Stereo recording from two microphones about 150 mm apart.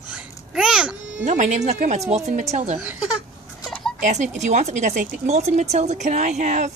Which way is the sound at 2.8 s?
10° right (ahead or behind).